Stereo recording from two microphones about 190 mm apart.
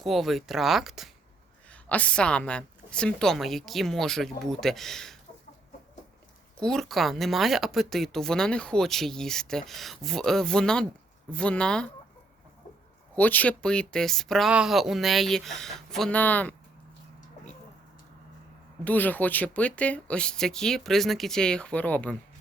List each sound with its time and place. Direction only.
0.0 s speech: centre (ahead or behind)
6.6 s speech: centre (ahead or behind)
13.1 s speech: 10° left (ahead or behind)
18.9 s speech: 10° left (ahead or behind)